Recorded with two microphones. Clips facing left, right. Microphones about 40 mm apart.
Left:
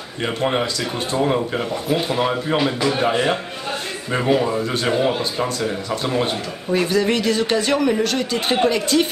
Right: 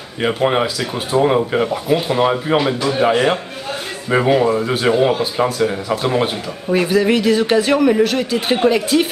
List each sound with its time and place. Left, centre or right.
0.3 s speech: centre